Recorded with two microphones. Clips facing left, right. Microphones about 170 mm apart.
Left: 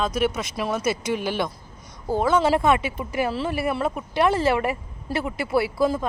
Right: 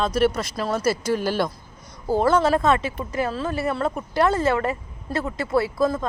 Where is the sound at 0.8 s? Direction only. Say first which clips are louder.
Right 2 dB; 20° left (ahead or behind).